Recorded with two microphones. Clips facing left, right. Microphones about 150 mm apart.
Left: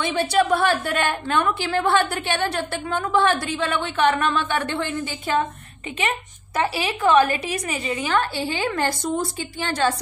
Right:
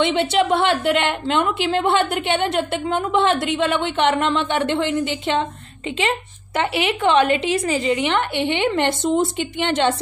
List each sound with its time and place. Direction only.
0.0 s a woman's voice: 25° right (ahead or behind)